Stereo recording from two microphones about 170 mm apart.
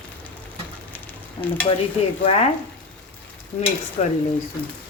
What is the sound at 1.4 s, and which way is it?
Stir, 25° left (ahead or behind).